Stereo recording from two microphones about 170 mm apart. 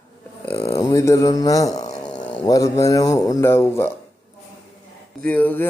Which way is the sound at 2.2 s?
10° left (ahead or behind).